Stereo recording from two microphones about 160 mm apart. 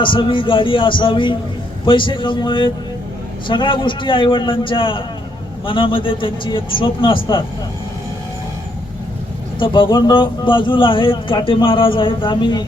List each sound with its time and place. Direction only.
0.0 s speech: 30° left (ahead or behind)
9.6 s speech: 30° left (ahead or behind)